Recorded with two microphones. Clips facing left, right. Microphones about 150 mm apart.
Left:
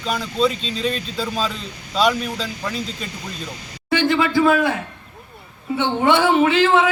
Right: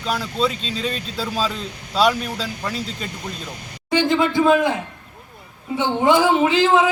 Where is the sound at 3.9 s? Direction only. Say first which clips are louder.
Even; 15° right (ahead or behind).